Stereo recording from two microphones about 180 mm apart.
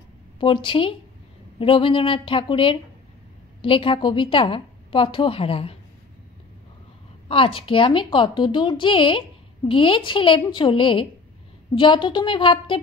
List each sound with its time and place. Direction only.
0.4 s a woman's voice: 30° left (ahead or behind)
7.2 s a woman's voice: 30° left (ahead or behind)